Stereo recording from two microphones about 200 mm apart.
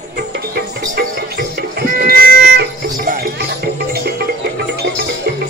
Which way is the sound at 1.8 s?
50° right (ahead or behind).